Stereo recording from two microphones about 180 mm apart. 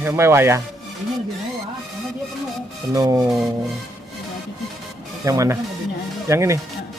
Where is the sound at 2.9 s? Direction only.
20° right (ahead or behind).